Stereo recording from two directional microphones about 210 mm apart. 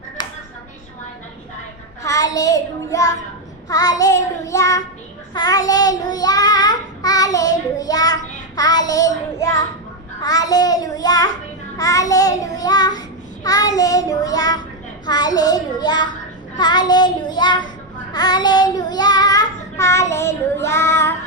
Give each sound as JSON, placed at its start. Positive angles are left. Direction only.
{"t": 0.2, "sound": "chopping", "side_deg": 20}
{"t": 2.0, "sound": "child singing", "side_deg": 15}